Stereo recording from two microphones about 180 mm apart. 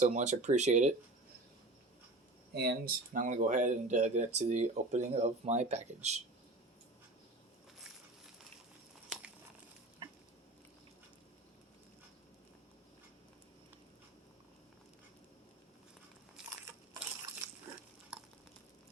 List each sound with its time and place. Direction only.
0.0 s speech: 40° right (ahead or behind)
2.6 s speech: 60° right (ahead or behind); by 6.1 s 40° right (ahead or behind)
16.4 s biting: 5° right (ahead or behind)